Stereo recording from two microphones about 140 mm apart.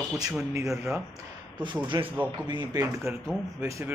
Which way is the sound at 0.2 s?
20° right (ahead or behind).